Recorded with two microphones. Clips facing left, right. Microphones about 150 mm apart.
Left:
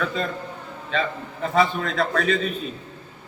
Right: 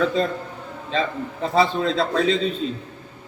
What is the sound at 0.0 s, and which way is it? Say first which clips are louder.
A man's voice: right 5 dB; 30° right (ahead or behind).